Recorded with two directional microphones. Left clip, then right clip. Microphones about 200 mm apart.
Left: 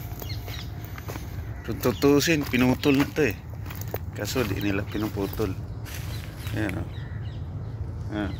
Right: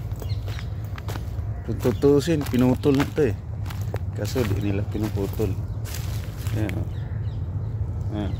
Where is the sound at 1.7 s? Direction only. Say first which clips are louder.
Right 2 dB; 15° right (ahead or behind).